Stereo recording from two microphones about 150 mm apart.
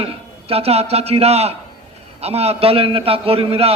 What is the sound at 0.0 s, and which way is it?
A man's voice, 40° right (ahead or behind).